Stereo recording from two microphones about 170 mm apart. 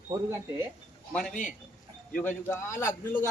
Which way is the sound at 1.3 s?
50° left (ahead or behind).